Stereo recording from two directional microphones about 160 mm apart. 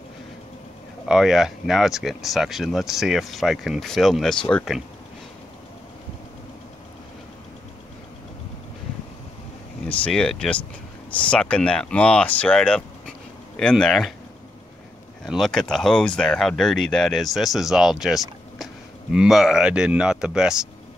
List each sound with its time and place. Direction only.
1.0 s speech: 5° right (ahead or behind)
9.8 s speech: 5° left (ahead or behind)
15.2 s speech: centre (ahead or behind)